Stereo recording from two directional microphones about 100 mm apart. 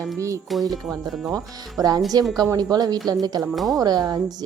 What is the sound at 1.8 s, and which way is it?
Speech, 35° right (ahead or behind).